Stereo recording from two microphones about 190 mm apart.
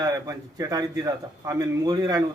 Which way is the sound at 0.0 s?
20° right (ahead or behind).